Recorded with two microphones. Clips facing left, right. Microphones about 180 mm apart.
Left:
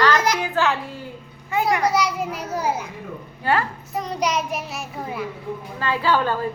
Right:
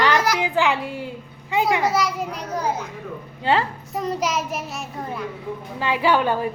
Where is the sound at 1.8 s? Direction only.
Centre (ahead or behind).